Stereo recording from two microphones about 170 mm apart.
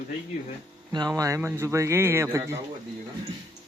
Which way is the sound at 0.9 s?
20° right (ahead or behind).